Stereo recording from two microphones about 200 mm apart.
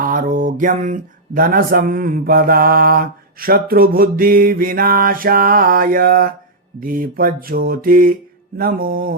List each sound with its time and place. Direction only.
0.0 s mantra: 45° right (ahead or behind)